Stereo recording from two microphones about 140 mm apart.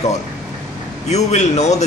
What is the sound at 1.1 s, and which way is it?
Speech, 55° left (ahead or behind).